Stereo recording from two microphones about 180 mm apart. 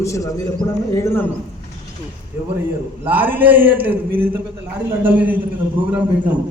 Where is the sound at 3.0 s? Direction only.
10° right (ahead or behind).